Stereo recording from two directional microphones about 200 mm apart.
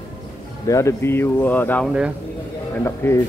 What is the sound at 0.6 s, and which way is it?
Speech, 15° left (ahead or behind).